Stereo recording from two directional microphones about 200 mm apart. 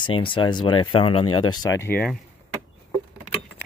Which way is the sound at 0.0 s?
25° left (ahead or behind).